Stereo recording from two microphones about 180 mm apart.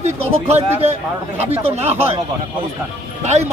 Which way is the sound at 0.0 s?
35° right (ahead or behind).